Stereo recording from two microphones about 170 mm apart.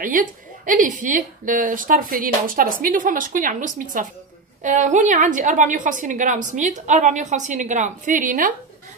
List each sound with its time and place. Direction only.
0.0 s a woman's voice: 50° right (ahead or behind)